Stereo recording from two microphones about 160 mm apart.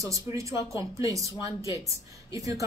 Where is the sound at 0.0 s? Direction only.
20° right (ahead or behind).